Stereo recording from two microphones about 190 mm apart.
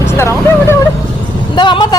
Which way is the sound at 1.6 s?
25° left (ahead or behind).